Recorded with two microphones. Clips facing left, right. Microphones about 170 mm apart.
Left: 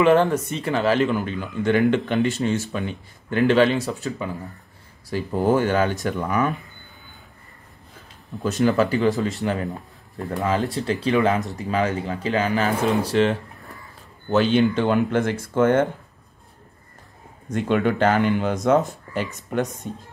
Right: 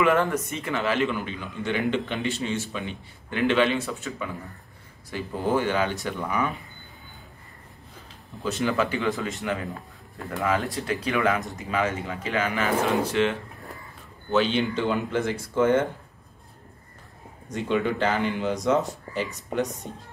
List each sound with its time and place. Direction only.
0.0 s speech: 30° left (ahead or behind)
5.3 s speech: 45° left (ahead or behind)
8.5 s speech: 40° left (ahead or behind)
14.3 s speech: 50° left (ahead or behind)
17.5 s speech: 55° left (ahead or behind)